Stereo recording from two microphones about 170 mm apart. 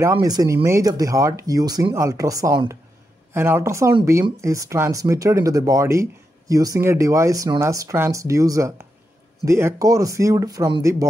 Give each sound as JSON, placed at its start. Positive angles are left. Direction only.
{"t": 0.0, "sound": "speech", "side_deg": -20}